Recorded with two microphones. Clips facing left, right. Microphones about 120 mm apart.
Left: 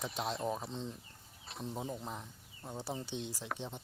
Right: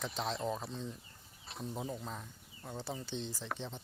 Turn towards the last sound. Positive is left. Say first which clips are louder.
# even
turn(degrees=10)  # may be behind; listen again after turning